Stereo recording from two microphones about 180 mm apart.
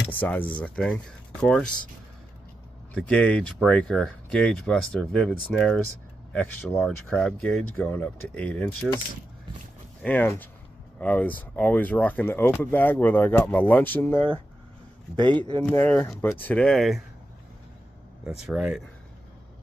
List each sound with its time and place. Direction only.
0.1 s speech: 10° left (ahead or behind)
2.9 s speech: 5° left (ahead or behind)
6.8 s speech: 5° left (ahead or behind)
10.0 s speech: 10° left (ahead or behind)
15.1 s speech: 25° right (ahead or behind)
15.6 s speech: 10° left (ahead or behind)
18.2 s speech: 5° right (ahead or behind)